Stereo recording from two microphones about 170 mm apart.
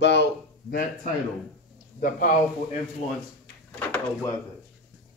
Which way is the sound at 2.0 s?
55° left (ahead or behind).